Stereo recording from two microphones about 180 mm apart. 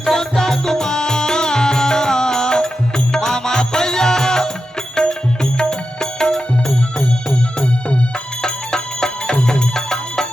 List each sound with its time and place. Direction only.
0.0 s music: centre (ahead or behind)